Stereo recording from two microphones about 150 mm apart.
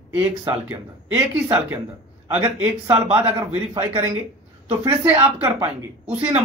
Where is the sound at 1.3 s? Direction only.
15° right (ahead or behind).